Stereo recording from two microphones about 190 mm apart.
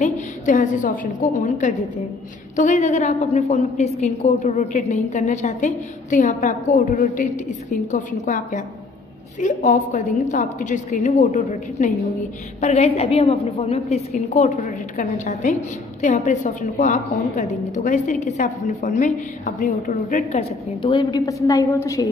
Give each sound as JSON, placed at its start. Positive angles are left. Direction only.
{"t": 0.0, "sound": "a woman's voice", "side_deg": 40}
{"t": 20.8, "sound": "a woman's voice", "side_deg": 25}